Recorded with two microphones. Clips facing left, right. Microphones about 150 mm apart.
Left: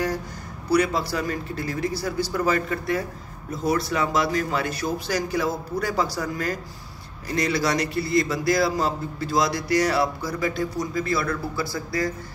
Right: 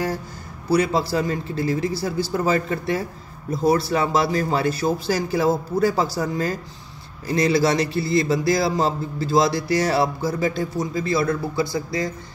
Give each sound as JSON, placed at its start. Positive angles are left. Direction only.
{"t": 0.7, "sound": "a man's voice", "side_deg": -30}